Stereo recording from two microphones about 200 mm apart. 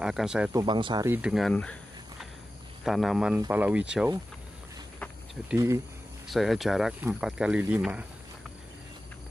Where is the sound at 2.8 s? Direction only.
Centre (ahead or behind).